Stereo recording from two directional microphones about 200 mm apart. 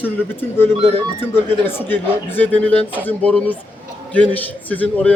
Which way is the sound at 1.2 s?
10° left (ahead or behind).